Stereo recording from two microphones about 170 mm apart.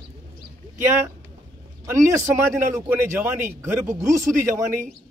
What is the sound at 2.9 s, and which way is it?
A man's voice, 10° right (ahead or behind).